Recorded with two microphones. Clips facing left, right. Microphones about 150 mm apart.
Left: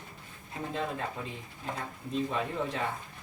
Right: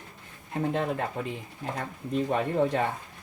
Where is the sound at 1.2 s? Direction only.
65° right (ahead or behind).